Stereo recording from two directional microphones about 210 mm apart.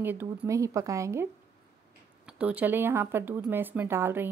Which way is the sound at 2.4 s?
5° right (ahead or behind).